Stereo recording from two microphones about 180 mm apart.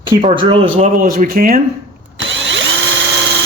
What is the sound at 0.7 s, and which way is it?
Speech, 50° right (ahead or behind).